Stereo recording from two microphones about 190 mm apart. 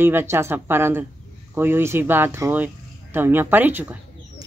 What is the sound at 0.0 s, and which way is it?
Speech, 10° right (ahead or behind).